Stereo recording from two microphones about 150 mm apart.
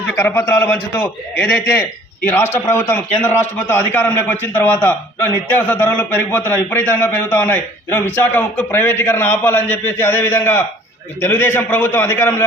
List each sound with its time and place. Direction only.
0.2 s a man's voice: 15° left (ahead or behind)